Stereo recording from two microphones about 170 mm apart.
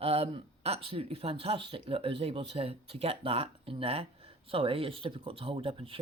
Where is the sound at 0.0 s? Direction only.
35° right (ahead or behind).